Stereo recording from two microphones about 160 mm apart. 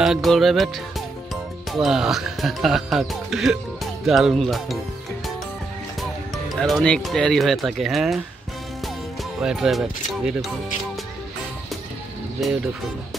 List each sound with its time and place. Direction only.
0.0 s music: centre (ahead or behind)
4.0 s speech: centre (ahead or behind)
5.9 s speech: centre (ahead or behind)
9.4 s speech: centre (ahead or behind)